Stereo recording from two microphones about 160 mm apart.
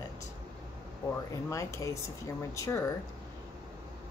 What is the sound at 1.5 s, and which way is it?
Speech, 20° left (ahead or behind).